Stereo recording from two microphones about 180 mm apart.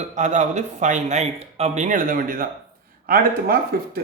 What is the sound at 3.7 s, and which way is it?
Speech, 55° right (ahead or behind).